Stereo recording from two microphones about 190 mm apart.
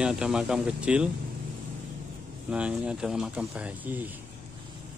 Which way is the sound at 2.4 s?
5° right (ahead or behind).